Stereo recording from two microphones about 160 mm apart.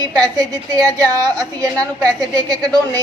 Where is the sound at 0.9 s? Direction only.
25° right (ahead or behind).